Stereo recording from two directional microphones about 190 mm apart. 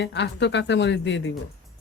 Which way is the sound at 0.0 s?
65° left (ahead or behind).